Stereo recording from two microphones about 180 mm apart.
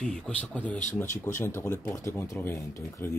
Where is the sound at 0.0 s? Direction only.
5° left (ahead or behind).